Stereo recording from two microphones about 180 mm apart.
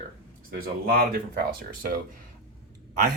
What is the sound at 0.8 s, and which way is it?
Speech, 55° right (ahead or behind).